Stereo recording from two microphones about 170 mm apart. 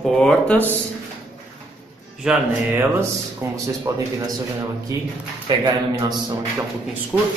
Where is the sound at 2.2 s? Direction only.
5° right (ahead or behind).